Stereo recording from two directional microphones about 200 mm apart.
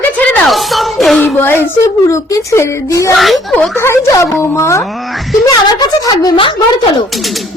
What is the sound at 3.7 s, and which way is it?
Speech, 10° left (ahead or behind).